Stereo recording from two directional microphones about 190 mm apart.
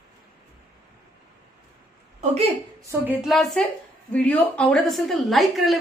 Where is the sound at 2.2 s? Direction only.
35° right (ahead or behind).